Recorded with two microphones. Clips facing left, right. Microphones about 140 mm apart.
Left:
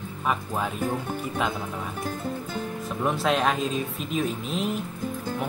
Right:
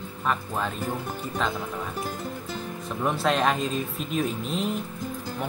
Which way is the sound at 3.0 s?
Centre (ahead or behind).